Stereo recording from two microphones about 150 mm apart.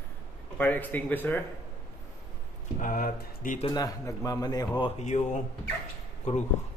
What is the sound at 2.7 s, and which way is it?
Speech, 65° left (ahead or behind).